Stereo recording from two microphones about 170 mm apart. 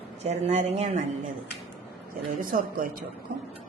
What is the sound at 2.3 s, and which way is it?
Speech, 55° right (ahead or behind).